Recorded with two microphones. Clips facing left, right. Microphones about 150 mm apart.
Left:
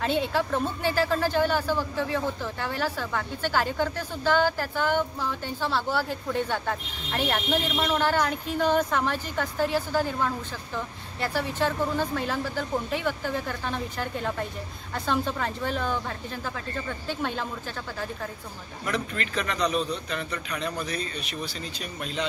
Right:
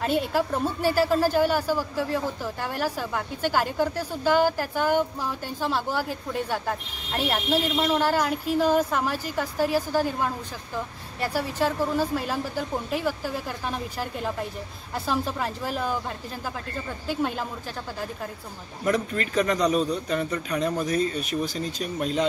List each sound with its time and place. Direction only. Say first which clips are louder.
0.0 s speech: right 1 dB; 10° right (ahead or behind)
17.1 s speech: right 4 dB; 10° right (ahead or behind)
18.9 s speech: right 5 dB; 45° right (ahead or behind)